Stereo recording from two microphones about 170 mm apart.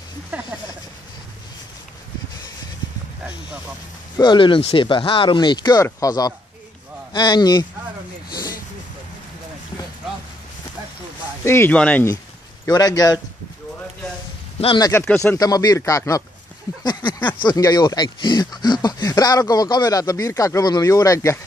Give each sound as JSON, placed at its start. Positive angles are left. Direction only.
{"t": 0.3, "sound": "speech", "side_deg": -10}
{"t": 4.2, "sound": "speech", "side_deg": 30}
{"t": 11.4, "sound": "speech", "side_deg": 15}
{"t": 12.6, "sound": "speech", "side_deg": 20}
{"t": 14.6, "sound": "speech", "side_deg": 30}
{"t": 14.9, "sound": "speech", "side_deg": 10}
{"t": 15.3, "sound": "speech", "side_deg": 20}